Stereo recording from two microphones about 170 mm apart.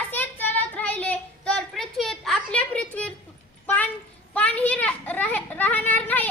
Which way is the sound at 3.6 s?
10° left (ahead or behind).